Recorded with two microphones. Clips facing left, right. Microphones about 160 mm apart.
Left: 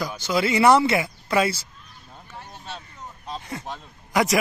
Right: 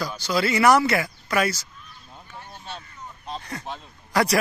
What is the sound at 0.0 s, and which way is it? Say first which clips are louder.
Speech: left 1 dB; 20° left (ahead or behind).